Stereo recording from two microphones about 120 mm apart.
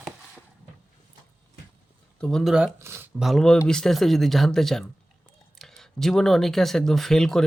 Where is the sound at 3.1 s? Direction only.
Centre (ahead or behind).